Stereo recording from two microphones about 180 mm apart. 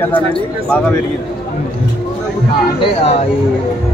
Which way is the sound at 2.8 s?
35° left (ahead or behind).